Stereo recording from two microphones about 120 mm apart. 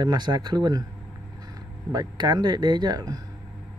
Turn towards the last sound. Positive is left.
turn(degrees=-35)  # may be behind; listen again after turning